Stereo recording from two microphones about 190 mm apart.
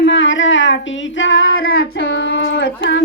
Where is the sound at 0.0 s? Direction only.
75° left (ahead or behind).